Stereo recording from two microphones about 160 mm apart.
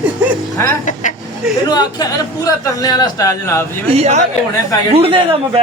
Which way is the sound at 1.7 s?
25° left (ahead or behind).